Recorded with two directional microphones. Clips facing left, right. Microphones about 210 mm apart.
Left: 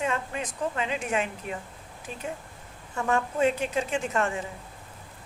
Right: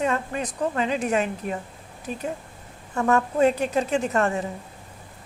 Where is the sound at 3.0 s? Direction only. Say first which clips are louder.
Right 5 dB; 40° right (ahead or behind).